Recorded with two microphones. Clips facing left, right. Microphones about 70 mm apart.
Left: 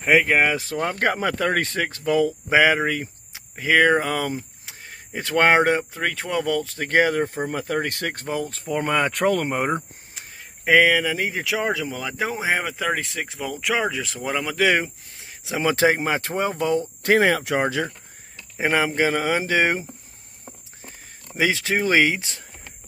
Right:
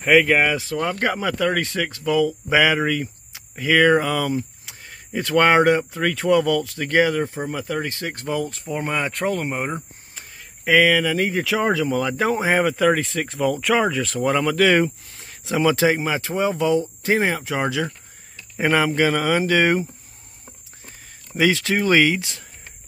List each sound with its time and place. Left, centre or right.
0.0 s speech: centre
0.3 s speech: left
8.6 s speech: left
10.3 s speech: left
11.4 s speech: centre
15.6 s speech: left
17.0 s speech: left
17.6 s speech: left
18.6 s speech: left
21.4 s speech: left